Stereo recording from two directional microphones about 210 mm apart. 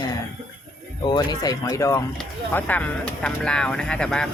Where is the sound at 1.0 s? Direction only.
20° left (ahead or behind).